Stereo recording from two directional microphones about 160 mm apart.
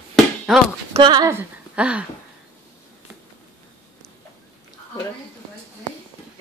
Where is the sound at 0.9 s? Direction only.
30° right (ahead or behind).